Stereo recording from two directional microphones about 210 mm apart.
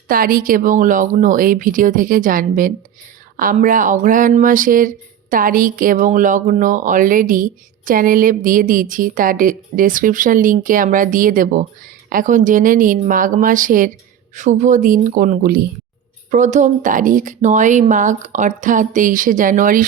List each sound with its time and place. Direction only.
0.1 s speech: 40° right (ahead or behind)